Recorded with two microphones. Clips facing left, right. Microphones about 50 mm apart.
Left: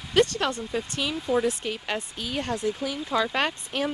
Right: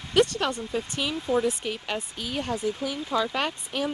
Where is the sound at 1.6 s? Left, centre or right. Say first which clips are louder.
Left 1 dB; left.